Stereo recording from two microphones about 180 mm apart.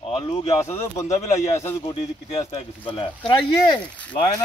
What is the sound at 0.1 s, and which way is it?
Speech, 30° left (ahead or behind).